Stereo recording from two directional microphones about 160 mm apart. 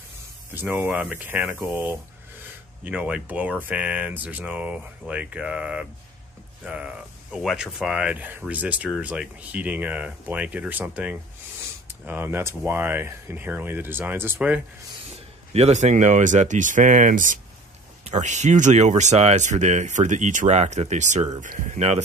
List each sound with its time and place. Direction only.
0.6 s speech: 10° right (ahead or behind)
15.0 s speech: 40° right (ahead or behind)